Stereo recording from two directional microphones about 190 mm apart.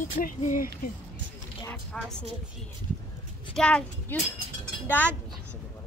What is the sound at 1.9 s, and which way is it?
Speech, 5° left (ahead or behind).